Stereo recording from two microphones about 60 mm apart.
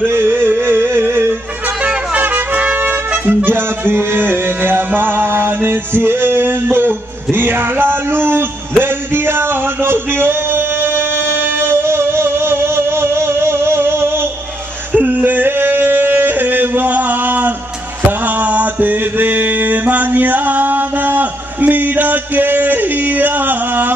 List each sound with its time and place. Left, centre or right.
0.0 s music: right
1.9 s music: right
7.3 s a sound: right
11.6 s music: right
14.9 s a sound: right
18.4 s mantra: right